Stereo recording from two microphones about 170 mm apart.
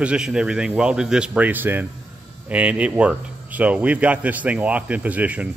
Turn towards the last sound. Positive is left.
turn(degrees=-10)  # may be behind; listen again after turning